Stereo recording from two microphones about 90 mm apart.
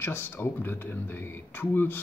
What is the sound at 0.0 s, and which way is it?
Speech, 25° left (ahead or behind).